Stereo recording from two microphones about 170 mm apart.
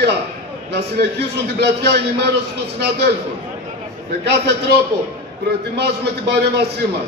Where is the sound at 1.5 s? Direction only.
75° right (ahead or behind).